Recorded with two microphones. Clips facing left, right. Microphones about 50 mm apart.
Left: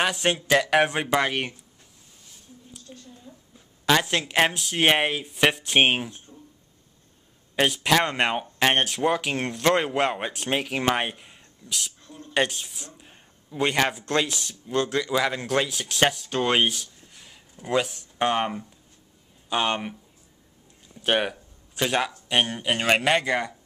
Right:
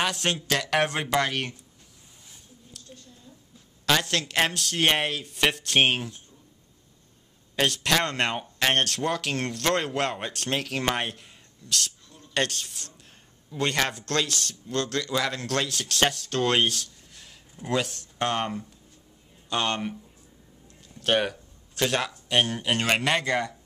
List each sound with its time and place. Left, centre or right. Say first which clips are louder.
0.0 s speech: left 3 dB; centre
2.9 s a sound: left 3 dB; centre
3.3 s a sound: left 4 dB; left
3.8 s speech: left 3 dB; centre
7.5 s speech: left 3 dB; centre
21.0 s speech: even; centre